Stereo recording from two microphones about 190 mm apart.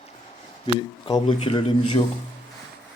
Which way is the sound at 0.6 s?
30° left (ahead or behind).